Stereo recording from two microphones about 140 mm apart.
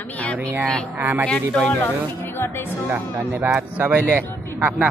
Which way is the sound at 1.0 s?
15° right (ahead or behind).